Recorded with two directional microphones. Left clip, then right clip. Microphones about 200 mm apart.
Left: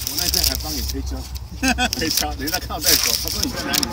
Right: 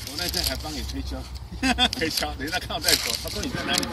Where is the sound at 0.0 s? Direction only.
50° left (ahead or behind).